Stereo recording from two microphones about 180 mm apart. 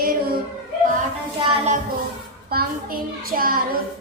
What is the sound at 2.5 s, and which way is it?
Child singing, 55° right (ahead or behind).